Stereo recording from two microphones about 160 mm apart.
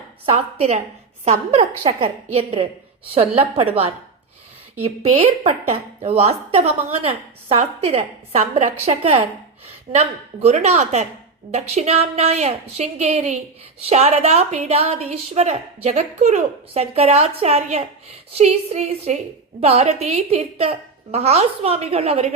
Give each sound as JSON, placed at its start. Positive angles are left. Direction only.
{"t": 0.3, "sound": "a woman's voice", "side_deg": -40}